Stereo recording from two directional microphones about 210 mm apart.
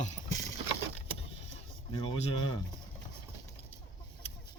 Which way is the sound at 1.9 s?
25° left (ahead or behind).